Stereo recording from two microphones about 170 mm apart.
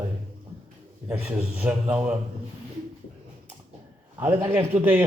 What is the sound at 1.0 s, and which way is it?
A man's voice, 10° right (ahead or behind).